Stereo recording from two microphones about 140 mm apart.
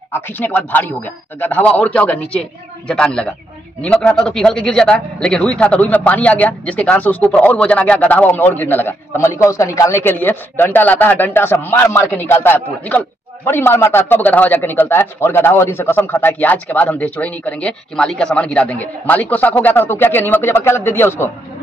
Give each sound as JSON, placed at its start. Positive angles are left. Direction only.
{"t": 0.1, "sound": "a man's voice", "side_deg": 15}